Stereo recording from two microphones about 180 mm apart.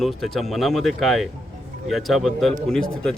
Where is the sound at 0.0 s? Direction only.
Centre (ahead or behind).